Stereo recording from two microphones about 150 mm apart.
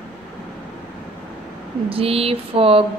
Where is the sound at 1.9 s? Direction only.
40° right (ahead or behind).